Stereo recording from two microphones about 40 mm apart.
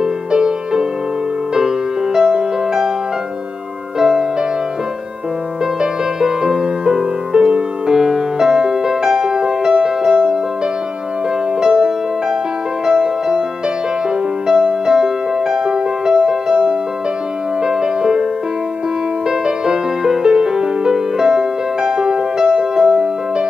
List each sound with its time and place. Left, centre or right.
0.0 s music: centre
2.1 s music: centre
5.8 s music: centre
7.3 s music: centre
11.6 s music: centre
14.5 s music: centre
17.6 s music: centre
19.4 s music: centre